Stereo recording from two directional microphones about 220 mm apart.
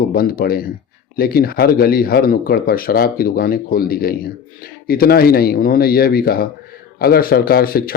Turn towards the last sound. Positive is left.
turn(degrees=45)  # may be behind; listen again after turning